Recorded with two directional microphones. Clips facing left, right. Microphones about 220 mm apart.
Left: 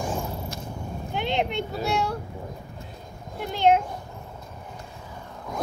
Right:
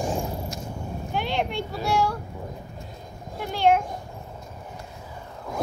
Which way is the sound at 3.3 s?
20° left (ahead or behind).